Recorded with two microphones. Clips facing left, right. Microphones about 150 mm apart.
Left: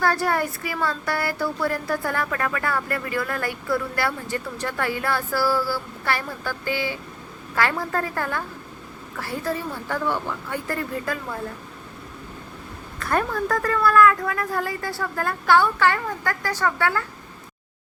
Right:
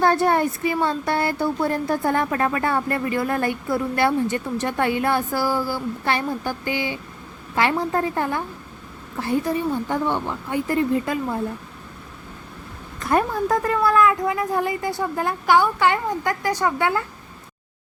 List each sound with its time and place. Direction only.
0.0 s speech: 20° right (ahead or behind)
13.0 s speech: 20° right (ahead or behind)